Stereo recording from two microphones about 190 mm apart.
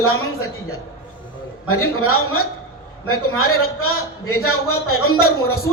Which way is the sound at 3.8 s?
90° left.